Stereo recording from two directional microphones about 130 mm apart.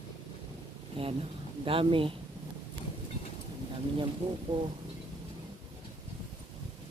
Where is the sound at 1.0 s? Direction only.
45° right (ahead or behind).